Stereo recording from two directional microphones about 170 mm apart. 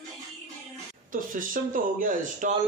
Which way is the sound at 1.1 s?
50° right (ahead or behind).